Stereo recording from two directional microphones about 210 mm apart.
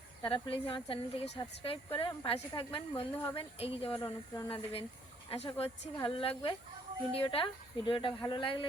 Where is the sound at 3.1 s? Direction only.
10° left (ahead or behind).